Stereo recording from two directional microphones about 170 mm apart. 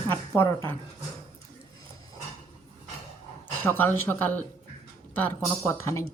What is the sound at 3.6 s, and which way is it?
Speech, 10° left (ahead or behind).